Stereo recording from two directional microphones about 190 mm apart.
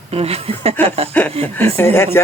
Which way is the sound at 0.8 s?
10° left (ahead or behind).